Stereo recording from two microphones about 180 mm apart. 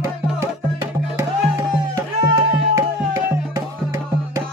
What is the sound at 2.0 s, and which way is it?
Music, 20° right (ahead or behind).